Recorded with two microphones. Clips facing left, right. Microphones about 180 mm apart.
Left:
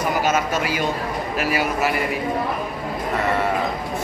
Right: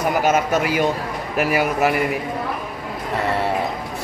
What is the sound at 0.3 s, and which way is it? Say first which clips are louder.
A man's voice: right 3 dB; 55° right (ahead or behind).